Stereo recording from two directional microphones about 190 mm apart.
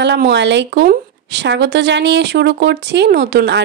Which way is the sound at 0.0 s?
65° right (ahead or behind).